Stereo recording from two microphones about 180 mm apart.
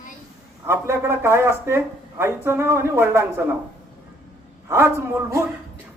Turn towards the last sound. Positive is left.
turn(degrees=-15)  # may be behind; listen again after turning